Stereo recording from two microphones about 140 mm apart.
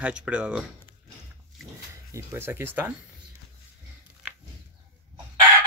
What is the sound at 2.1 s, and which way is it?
Speech, 15° right (ahead or behind).